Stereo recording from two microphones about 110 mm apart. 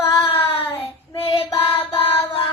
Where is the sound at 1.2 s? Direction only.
60° left (ahead or behind).